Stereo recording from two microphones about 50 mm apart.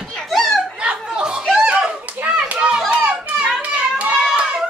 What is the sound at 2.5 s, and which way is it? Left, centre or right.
Children playing, right.